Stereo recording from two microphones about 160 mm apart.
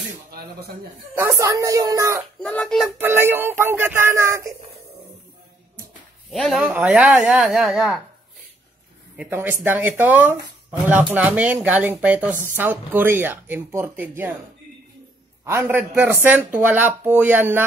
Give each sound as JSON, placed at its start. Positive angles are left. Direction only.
{"t": 1.1, "sound": "speech", "side_deg": -20}
{"t": 2.4, "sound": "speech", "side_deg": 5}
{"t": 3.0, "sound": "speech", "side_deg": -15}
{"t": 6.3, "sound": "speech", "side_deg": 0}
{"t": 9.1, "sound": "speech", "side_deg": -10}
{"t": 15.4, "sound": "speech", "side_deg": -15}